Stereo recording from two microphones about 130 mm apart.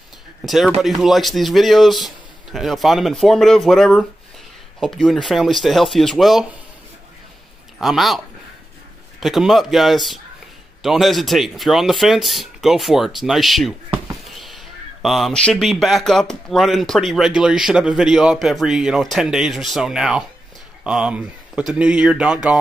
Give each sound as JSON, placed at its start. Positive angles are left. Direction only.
{"t": 0.7, "sound": "speech", "side_deg": 0}
{"t": 7.8, "sound": "speech", "side_deg": 0}
{"t": 9.2, "sound": "speech", "side_deg": 0}